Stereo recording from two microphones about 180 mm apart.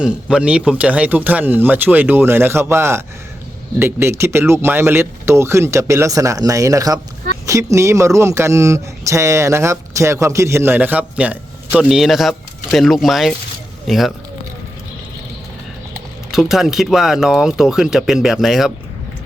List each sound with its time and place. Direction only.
0.0 s speech: 5° right (ahead or behind)
16.3 s speech: centre (ahead or behind)